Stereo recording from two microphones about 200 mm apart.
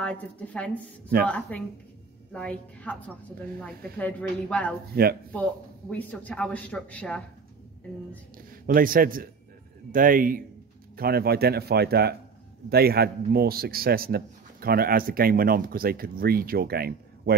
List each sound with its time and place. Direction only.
0.0 s speech: 5° left (ahead or behind)
4.0 s speech: 5° left (ahead or behind)
4.9 s a man's voice: 50° right (ahead or behind)
5.3 s speech: 5° left (ahead or behind)
8.4 s a man's voice: 45° right (ahead or behind)